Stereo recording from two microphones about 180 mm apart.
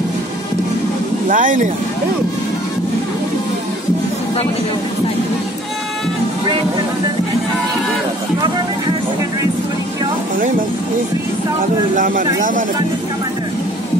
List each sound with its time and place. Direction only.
1.3 s speech: 45° right (ahead or behind)
12.0 s speech: 50° right (ahead or behind)